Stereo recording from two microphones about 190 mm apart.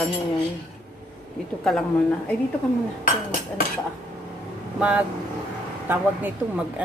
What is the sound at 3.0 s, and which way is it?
Speech, 45° left (ahead or behind).